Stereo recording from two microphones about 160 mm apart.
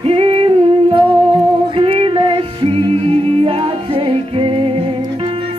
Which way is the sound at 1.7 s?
35° right (ahead or behind).